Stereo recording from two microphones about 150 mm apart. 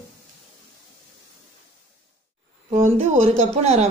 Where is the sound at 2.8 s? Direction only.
50° right (ahead or behind).